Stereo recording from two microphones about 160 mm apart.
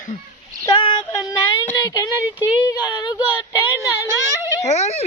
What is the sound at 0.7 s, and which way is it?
Female singing, 30° left (ahead or behind).